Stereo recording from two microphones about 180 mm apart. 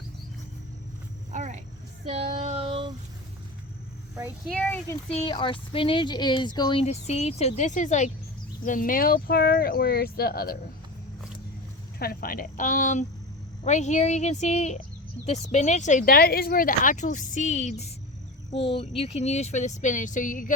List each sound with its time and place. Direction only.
1.3 s a sound: 40° right (ahead or behind)
2.0 s child singing: 35° right (ahead or behind)
4.4 s speech: 5° left (ahead or behind)
5.0 s speech: 30° left (ahead or behind); by 10.6 s 55° left (ahead or behind)
11.9 s speech: 55° left (ahead or behind)